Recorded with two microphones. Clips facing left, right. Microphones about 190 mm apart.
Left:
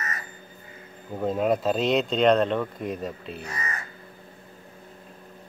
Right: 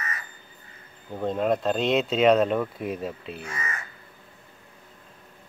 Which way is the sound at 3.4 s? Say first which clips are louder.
Even; 35° left (ahead or behind).